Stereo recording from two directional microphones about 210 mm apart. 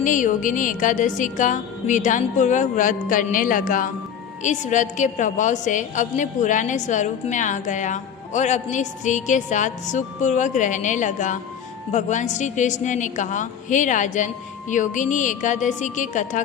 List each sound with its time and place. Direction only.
0.0 s a woman's voice: 40° left (ahead or behind)